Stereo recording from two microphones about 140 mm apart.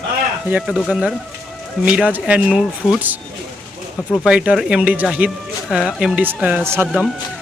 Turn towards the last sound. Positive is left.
turn(degrees=-15)  # may be behind; listen again after turning